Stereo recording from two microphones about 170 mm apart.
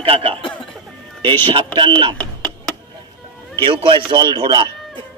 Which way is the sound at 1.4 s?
30° right (ahead or behind).